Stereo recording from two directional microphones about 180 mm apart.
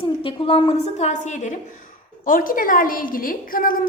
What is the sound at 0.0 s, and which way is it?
A woman's voice, 30° left (ahead or behind).